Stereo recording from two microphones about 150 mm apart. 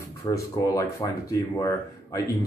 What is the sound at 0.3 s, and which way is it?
Speech, 20° left (ahead or behind).